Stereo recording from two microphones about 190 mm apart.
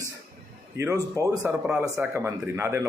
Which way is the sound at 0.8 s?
15° right (ahead or behind).